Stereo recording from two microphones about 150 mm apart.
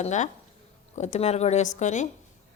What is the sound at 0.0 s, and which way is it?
Speech, 55° left (ahead or behind).